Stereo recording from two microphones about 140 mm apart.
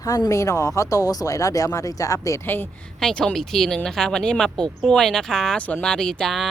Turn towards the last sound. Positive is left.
turn(degrees=5)  # may be behind; listen again after turning